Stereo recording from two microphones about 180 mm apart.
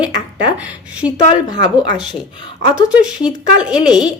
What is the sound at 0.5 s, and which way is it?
Speech, 5° right (ahead or behind).